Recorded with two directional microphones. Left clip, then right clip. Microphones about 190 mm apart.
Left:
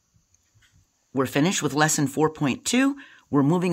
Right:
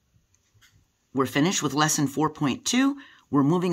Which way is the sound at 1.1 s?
30° left (ahead or behind).